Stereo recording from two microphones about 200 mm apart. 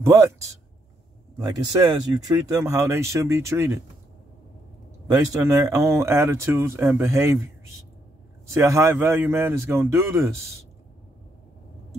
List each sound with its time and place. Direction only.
0.0 s speech: 15° right (ahead or behind)
5.5 s speech: 15° right (ahead or behind)
8.5 s speech: 15° right (ahead or behind)